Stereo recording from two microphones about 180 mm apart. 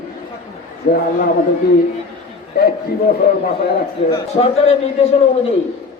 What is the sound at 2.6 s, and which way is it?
Speech, 60° left (ahead or behind).